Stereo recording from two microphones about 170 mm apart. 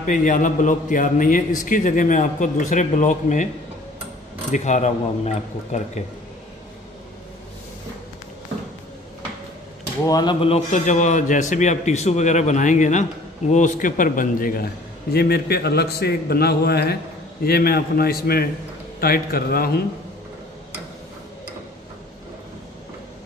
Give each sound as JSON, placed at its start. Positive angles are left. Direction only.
{"t": 0.0, "sound": "a man's voice", "side_deg": 50}
{"t": 4.5, "sound": "a man's voice", "side_deg": 45}
{"t": 10.0, "sound": "speech", "side_deg": 20}
{"t": 10.4, "sound": "a man's voice", "side_deg": 40}